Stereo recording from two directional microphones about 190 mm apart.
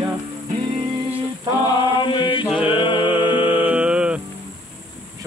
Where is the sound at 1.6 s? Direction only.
25° left (ahead or behind).